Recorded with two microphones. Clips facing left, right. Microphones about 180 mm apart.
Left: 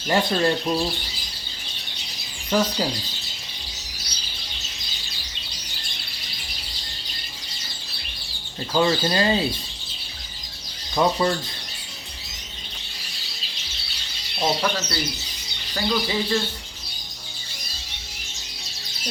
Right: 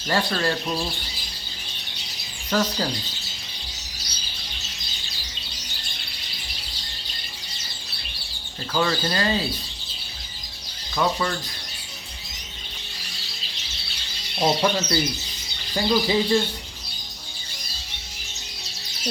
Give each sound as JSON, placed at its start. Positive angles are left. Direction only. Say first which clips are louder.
{"t": 0.1, "sound": "speech", "louder": "left 3 dB", "side_deg": 20}
{"t": 2.5, "sound": "speech", "louder": "left 2 dB", "side_deg": 10}
{"t": 8.7, "sound": "speech", "louder": "left 3 dB", "side_deg": 20}
{"t": 10.9, "sound": "speech", "louder": "left 3 dB", "side_deg": 25}
{"t": 14.3, "sound": "speech", "louder": "right 2 dB", "side_deg": -15}